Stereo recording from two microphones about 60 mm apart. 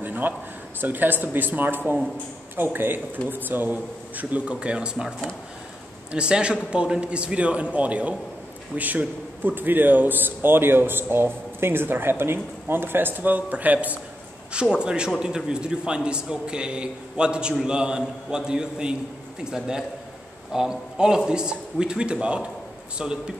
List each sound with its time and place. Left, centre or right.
0.0 s a sound: right
0.7 s a man's voice: right; by 5.0 s centre
6.1 s a man's voice: centre
14.5 s a man's voice: centre